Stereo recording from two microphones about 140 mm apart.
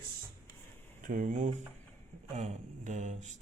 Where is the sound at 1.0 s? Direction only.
70° right (ahead or behind).